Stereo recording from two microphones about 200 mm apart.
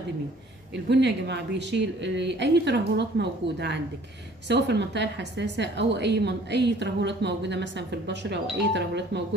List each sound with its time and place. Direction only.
0.8 s a woman's voice: 60° right (ahead or behind)